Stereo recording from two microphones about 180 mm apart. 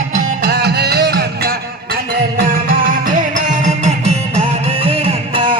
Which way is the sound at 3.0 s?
45° right (ahead or behind).